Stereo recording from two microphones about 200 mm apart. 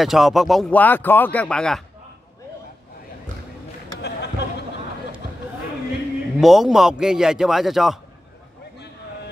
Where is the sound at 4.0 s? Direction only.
55° left (ahead or behind).